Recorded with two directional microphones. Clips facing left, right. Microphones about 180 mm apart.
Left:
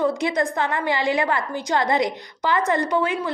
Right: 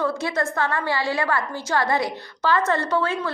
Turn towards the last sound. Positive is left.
turn(degrees=15)  # may be behind; listen again after turning